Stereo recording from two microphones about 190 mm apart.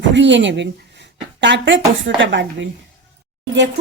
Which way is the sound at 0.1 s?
70° right (ahead or behind).